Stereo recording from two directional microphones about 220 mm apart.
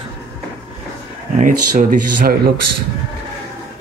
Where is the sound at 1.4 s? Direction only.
35° right (ahead or behind).